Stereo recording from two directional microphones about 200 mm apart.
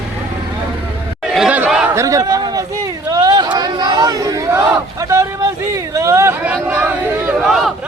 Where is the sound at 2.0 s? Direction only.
15° right (ahead or behind).